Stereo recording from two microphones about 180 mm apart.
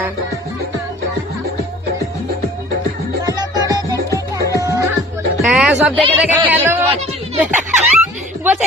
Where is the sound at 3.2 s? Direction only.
20° right (ahead or behind).